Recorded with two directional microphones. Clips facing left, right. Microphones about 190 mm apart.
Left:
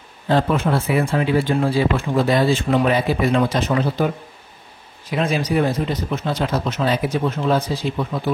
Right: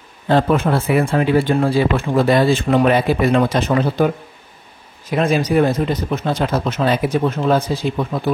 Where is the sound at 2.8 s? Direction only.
60° right (ahead or behind).